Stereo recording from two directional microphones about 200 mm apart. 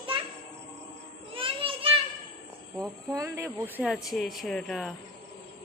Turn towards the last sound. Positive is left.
turn(degrees=0)  # may be behind; listen again after turning